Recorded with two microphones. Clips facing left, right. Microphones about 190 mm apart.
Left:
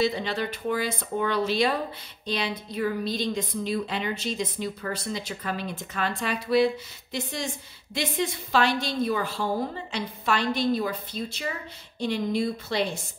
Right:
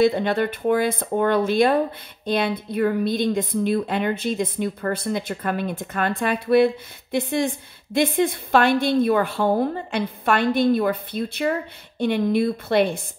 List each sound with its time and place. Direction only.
0.0 s a woman's voice: 55° right (ahead or behind)